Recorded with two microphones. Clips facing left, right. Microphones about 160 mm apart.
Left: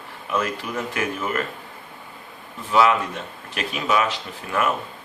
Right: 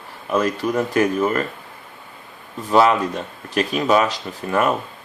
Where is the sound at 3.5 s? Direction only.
35° right (ahead or behind).